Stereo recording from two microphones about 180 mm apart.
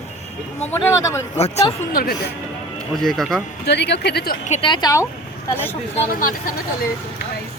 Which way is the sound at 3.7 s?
70° left (ahead or behind).